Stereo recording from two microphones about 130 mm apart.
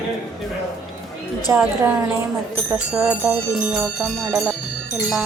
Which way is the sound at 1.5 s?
10° right (ahead or behind).